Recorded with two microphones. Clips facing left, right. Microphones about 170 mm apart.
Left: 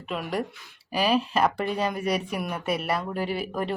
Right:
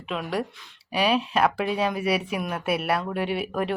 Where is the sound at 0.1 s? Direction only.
Centre (ahead or behind).